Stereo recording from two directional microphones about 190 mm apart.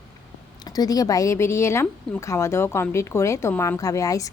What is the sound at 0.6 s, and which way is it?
Speech, 20° left (ahead or behind).